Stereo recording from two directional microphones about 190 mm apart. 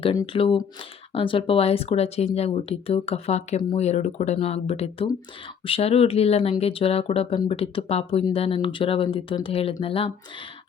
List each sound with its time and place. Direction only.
0.0 s speech: 25° left (ahead or behind)